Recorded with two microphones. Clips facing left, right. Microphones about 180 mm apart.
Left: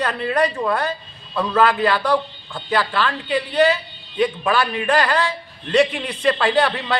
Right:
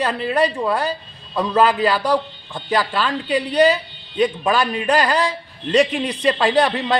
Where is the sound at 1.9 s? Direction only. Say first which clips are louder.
Even; 15° right (ahead or behind).